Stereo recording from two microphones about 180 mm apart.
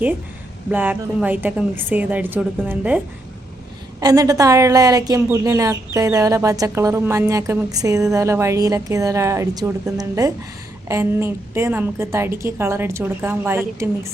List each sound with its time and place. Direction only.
0.7 s speech: 10° right (ahead or behind)
4.0 s speech: 20° right (ahead or behind)